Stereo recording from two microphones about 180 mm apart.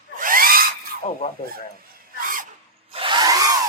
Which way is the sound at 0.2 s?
50° right (ahead or behind).